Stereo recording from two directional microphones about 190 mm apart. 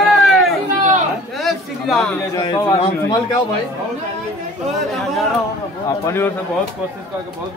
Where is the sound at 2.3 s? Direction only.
15° left (ahead or behind).